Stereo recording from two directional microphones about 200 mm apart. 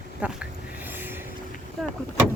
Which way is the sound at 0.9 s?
10° right (ahead or behind).